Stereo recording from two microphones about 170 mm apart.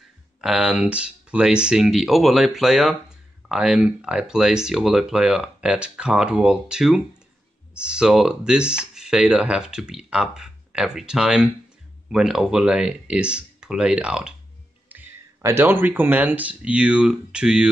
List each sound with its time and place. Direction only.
0.4 s speech: 5° right (ahead or behind)